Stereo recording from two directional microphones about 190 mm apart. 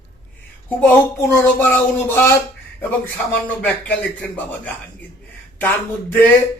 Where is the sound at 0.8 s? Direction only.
10° left (ahead or behind).